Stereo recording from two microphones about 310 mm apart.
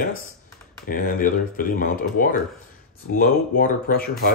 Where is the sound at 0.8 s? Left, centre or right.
Left.